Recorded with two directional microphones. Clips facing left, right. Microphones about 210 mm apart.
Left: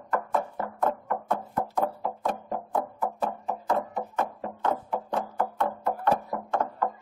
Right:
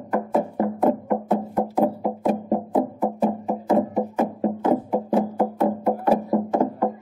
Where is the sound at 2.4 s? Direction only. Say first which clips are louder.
Right 9 dB; 20° right (ahead or behind).